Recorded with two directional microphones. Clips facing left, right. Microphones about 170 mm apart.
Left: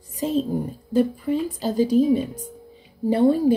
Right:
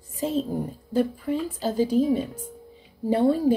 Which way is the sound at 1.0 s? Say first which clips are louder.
Left 3 dB; 15° left (ahead or behind).